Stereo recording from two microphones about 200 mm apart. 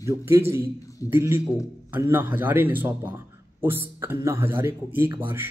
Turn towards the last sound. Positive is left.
turn(degrees=-10)  # may be behind; listen again after turning